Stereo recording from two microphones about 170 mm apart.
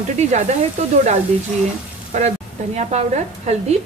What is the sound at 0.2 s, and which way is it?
Speech, 45° right (ahead or behind).